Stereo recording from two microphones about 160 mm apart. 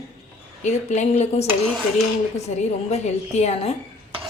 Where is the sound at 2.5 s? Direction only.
45° left (ahead or behind).